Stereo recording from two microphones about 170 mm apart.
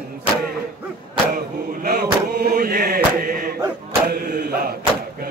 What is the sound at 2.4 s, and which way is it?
Chant, 60° right (ahead or behind).